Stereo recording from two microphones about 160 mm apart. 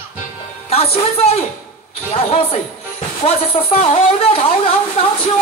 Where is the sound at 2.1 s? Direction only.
40° left (ahead or behind).